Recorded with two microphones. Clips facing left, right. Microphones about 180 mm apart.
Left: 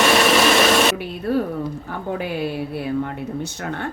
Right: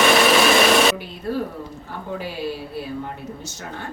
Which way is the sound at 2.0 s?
55° left (ahead or behind).